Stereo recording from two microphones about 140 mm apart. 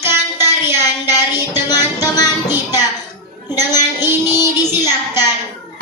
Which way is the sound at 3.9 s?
15° right (ahead or behind).